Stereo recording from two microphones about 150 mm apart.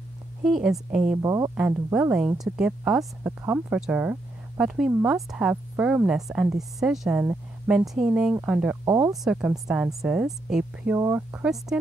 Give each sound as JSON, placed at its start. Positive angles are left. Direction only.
{"t": 0.4, "sound": "a woman's voice", "side_deg": -5}
{"t": 1.1, "sound": "speech", "side_deg": -25}
{"t": 1.6, "sound": "a woman's voice", "side_deg": -10}
{"t": 8.8, "sound": "speech", "side_deg": -20}
{"t": 9.1, "sound": "a woman's voice", "side_deg": -5}
{"t": 11.0, "sound": "speech", "side_deg": -20}
{"t": 11.3, "sound": "speech", "side_deg": -5}